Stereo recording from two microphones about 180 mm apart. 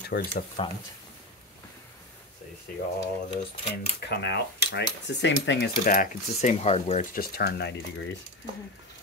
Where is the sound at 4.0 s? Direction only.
70° left (ahead or behind).